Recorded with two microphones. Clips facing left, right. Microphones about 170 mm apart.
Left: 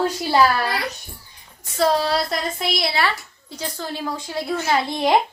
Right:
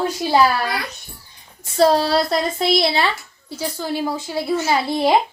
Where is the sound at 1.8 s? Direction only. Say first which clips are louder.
Right 4 dB; 35° right (ahead or behind).